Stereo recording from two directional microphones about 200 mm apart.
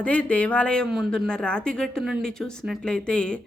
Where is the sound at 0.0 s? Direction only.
5° left (ahead or behind).